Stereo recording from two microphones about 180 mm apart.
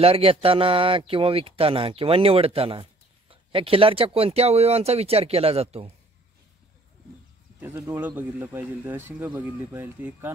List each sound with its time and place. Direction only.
0.0 s a man's voice: 30° right (ahead or behind)
7.6 s speech: 15° right (ahead or behind)